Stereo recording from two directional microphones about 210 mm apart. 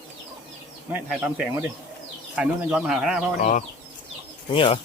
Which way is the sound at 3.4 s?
35° left (ahead or behind).